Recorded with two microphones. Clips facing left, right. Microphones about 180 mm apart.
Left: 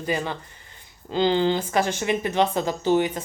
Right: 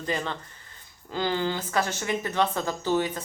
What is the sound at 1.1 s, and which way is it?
Speech, 25° left (ahead or behind).